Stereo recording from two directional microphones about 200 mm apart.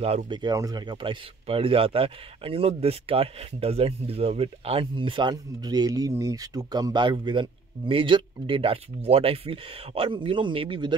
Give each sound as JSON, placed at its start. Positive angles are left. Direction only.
{"t": 0.0, "sound": "speech", "side_deg": -30}